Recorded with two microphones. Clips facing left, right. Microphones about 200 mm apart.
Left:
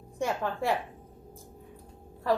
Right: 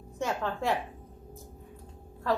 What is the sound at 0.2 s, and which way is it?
Speech, 10° left (ahead or behind).